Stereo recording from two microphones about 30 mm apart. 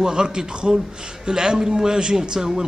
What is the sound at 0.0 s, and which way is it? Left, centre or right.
A man's voice, right.